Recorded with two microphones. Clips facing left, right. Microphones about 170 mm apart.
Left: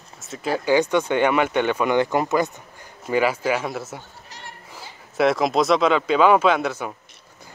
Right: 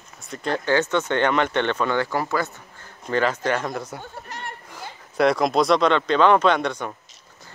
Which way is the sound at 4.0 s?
55° right (ahead or behind).